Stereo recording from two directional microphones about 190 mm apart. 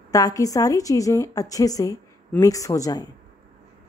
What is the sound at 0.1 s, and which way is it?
A woman's voice, 20° left (ahead or behind).